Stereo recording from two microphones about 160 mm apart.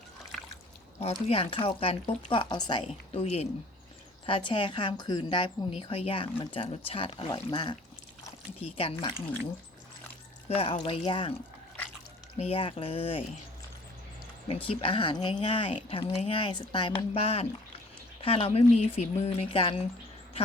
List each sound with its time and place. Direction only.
1.3 s a woman's voice: 35° left (ahead or behind)
10.5 s a woman's voice: 35° left (ahead or behind)
12.4 s a woman's voice: 35° left (ahead or behind)
14.4 s a woman's voice: 35° left (ahead or behind)